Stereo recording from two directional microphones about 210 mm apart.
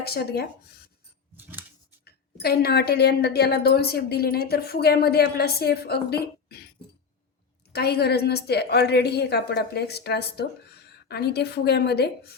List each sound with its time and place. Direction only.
0.0 s a woman's voice: 50° left (ahead or behind)
1.4 s scissors: 10° right (ahead or behind)
2.0 s a woman's voice: 50° left (ahead or behind)
7.7 s a woman's voice: 50° left (ahead or behind)